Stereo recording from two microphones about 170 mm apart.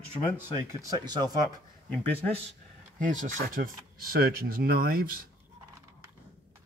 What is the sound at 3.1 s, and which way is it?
Speech, 50° right (ahead or behind).